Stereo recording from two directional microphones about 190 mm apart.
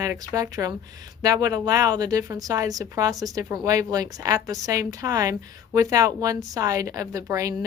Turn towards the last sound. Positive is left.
turn(degrees=-15)  # may be behind; listen again after turning